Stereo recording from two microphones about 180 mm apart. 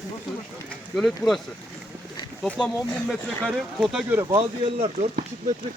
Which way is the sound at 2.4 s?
5° left (ahead or behind).